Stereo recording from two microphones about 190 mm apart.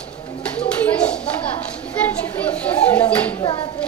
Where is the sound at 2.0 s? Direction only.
10° left (ahead or behind).